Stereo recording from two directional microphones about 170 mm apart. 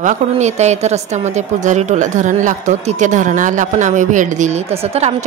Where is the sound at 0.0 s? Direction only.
45° right (ahead or behind).